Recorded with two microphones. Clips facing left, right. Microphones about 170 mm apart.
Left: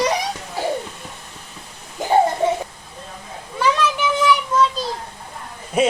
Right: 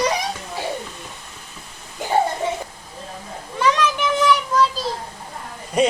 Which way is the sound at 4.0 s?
Centre (ahead or behind).